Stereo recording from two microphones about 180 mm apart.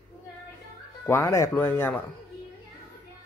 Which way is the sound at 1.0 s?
15° left (ahead or behind).